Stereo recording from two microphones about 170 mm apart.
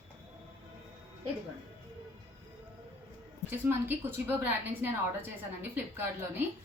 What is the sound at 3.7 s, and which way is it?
A woman's voice, 10° right (ahead or behind).